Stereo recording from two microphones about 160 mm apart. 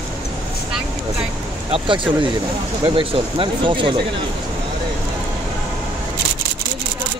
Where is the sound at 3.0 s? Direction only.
30° right (ahead or behind).